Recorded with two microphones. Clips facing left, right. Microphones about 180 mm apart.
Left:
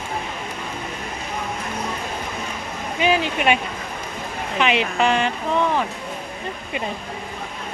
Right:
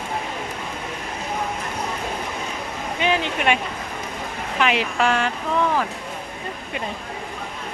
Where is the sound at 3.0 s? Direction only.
5° left (ahead or behind).